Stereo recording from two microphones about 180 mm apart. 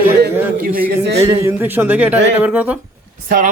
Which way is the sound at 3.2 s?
50° right (ahead or behind).